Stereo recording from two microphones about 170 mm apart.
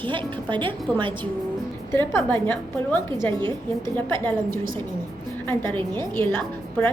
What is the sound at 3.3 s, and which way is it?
Speech, 25° right (ahead or behind).